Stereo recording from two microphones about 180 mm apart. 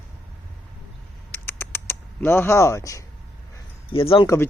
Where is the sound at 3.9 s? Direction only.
30° left (ahead or behind).